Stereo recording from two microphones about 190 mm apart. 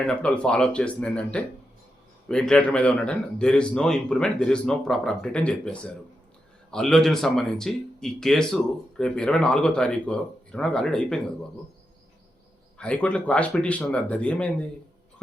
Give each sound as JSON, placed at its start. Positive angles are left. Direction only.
{"t": 0.1, "sound": "a man's voice", "side_deg": 5}
{"t": 12.8, "sound": "speech", "side_deg": 5}